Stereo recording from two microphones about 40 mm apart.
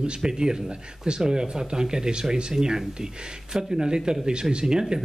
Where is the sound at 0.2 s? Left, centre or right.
Centre.